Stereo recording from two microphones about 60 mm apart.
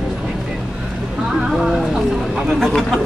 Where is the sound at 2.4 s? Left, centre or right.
Centre.